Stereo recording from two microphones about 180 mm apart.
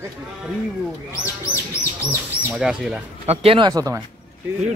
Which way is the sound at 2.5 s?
5° right (ahead or behind).